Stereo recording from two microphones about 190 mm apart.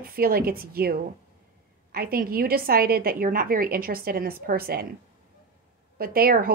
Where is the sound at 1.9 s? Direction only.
50° right (ahead or behind).